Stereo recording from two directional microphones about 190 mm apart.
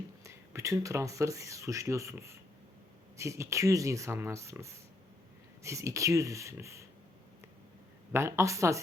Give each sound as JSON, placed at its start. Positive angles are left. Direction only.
{"t": 0.3, "sound": "speech", "side_deg": -15}
{"t": 8.1, "sound": "speech", "side_deg": -15}